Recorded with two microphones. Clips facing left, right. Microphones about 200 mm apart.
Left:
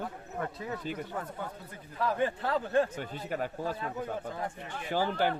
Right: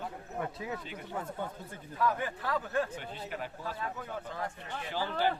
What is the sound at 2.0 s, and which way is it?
Speech, 30° left (ahead or behind).